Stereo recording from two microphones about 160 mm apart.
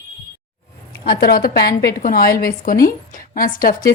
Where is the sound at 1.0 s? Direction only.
70° left (ahead or behind).